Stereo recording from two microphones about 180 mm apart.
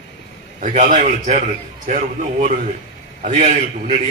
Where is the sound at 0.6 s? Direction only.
45° right (ahead or behind).